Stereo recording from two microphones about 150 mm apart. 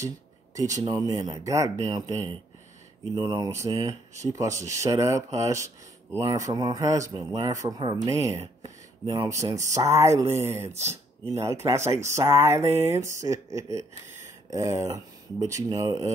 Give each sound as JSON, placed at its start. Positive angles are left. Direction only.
{"t": 0.6, "sound": "speech", "side_deg": -25}
{"t": 3.2, "sound": "speech", "side_deg": -30}
{"t": 10.7, "sound": "speech", "side_deg": -45}
{"t": 11.3, "sound": "speech", "side_deg": -20}